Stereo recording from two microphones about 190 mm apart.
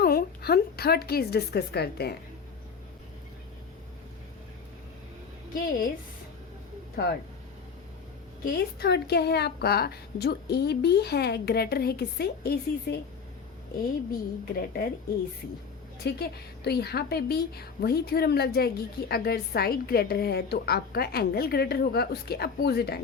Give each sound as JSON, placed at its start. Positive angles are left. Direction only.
{"t": 0.0, "sound": "a woman's voice", "side_deg": 55}
{"t": 5.5, "sound": "speech", "side_deg": 50}
{"t": 8.4, "sound": "a woman's voice", "side_deg": 60}
{"t": 14.1, "sound": "a woman's voice", "side_deg": 55}
{"t": 16.0, "sound": "a woman's voice", "side_deg": 55}